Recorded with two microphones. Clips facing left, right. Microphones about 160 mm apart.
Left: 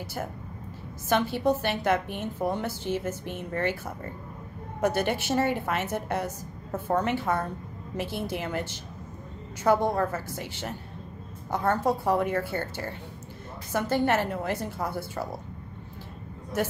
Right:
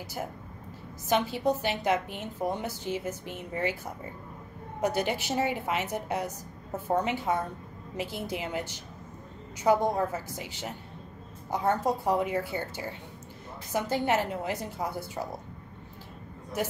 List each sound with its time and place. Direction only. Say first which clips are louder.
1.0 s a woman's voice: left 2 dB; 15° right (ahead or behind)
5.1 s a woman's voice: left 3 dB; 15° right (ahead or behind)